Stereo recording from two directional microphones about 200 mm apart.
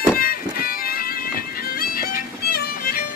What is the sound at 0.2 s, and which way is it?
Music, 45° left (ahead or behind).